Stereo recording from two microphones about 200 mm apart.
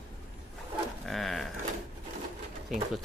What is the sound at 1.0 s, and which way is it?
Pigeon, centre (ahead or behind).